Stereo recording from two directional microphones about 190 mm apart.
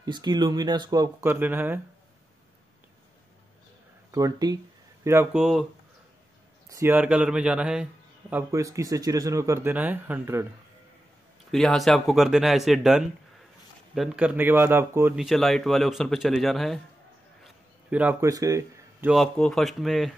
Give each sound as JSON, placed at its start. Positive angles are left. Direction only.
{"t": 0.0, "sound": "speech", "side_deg": -20}
{"t": 4.1, "sound": "speech", "side_deg": -20}
{"t": 6.7, "sound": "a man's voice", "side_deg": -10}
{"t": 11.5, "sound": "a man's voice", "side_deg": 0}
{"t": 15.1, "sound": "speech", "side_deg": 0}
{"t": 17.4, "sound": "a sound", "side_deg": -5}
{"t": 18.3, "sound": "speech", "side_deg": -15}
{"t": 19.1, "sound": "speech", "side_deg": 5}